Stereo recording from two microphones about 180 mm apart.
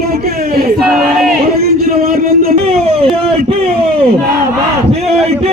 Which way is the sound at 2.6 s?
35° right (ahead or behind).